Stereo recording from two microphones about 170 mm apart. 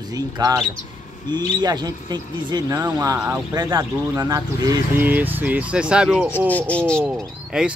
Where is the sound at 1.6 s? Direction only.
25° right (ahead or behind); by 7.7 s 5° right (ahead or behind).